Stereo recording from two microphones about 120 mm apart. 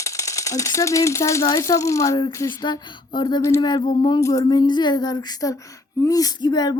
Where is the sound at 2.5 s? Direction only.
40° left (ahead or behind).